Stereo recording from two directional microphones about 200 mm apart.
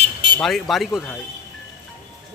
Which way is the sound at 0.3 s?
Centre (ahead or behind).